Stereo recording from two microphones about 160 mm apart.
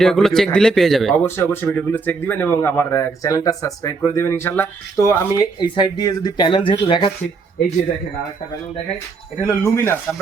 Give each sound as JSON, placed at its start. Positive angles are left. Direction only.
{"t": 0.0, "sound": "a man's voice", "side_deg": 5}
{"t": 1.1, "sound": "speech", "side_deg": 15}
{"t": 9.5, "sound": "speech", "side_deg": 15}